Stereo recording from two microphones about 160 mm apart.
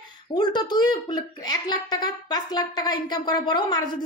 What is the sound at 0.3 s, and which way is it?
A woman's voice, 25° left (ahead or behind).